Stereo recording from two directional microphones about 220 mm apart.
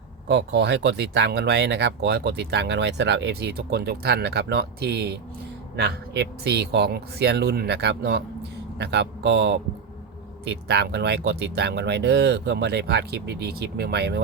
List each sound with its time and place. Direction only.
0.3 s speech: 50° right (ahead or behind)